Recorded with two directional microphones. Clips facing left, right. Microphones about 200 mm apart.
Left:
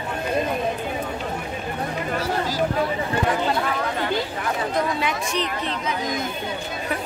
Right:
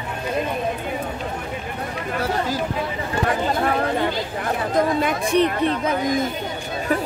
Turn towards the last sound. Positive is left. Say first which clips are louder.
# right 6 dB
turn(degrees=-55)  # may be behind; listen again after turning